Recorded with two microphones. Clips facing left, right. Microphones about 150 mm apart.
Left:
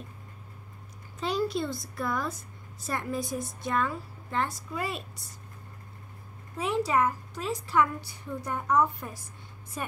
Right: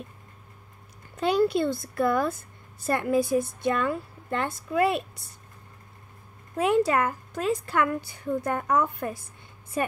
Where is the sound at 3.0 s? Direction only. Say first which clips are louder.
Right 10 dB; 65° right (ahead or behind).